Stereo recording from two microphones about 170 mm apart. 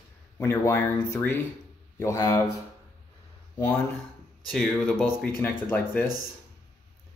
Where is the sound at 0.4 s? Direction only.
15° left (ahead or behind).